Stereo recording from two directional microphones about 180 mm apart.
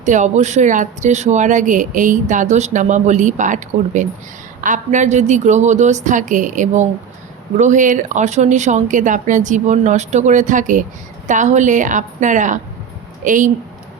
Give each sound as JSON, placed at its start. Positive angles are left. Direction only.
{"t": 0.0, "sound": "a woman's voice", "side_deg": -40}